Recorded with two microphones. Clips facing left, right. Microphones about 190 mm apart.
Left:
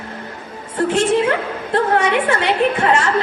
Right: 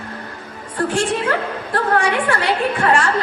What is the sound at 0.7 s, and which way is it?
A woman's voice, 20° left (ahead or behind).